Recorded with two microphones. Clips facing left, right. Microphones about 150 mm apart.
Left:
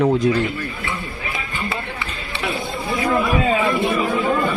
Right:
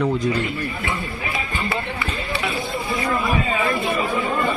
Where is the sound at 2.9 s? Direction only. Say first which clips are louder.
Left 4 dB; centre (ahead or behind).